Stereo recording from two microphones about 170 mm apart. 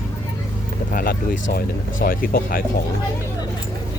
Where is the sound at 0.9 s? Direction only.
55° left (ahead or behind).